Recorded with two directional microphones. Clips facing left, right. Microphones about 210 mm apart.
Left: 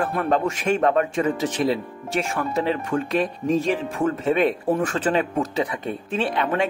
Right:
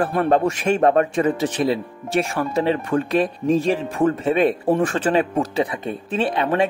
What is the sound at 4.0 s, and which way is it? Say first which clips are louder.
Speech: right 3 dB; 35° right (ahead or behind).